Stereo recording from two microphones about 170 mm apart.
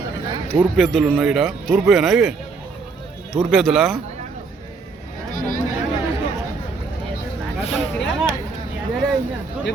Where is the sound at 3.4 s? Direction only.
Centre (ahead or behind).